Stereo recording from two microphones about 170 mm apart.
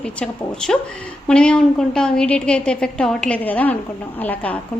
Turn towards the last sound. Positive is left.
turn(degrees=10)  # may be behind; listen again after turning